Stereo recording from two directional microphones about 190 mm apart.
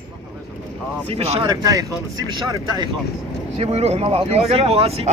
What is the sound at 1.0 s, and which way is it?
Speech, 35° right (ahead or behind).